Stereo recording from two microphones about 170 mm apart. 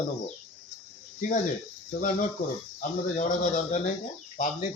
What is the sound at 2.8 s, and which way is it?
Speech, 50° left (ahead or behind).